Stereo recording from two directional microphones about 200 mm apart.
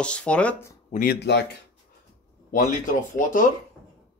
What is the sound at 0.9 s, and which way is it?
Speech, 50° left (ahead or behind).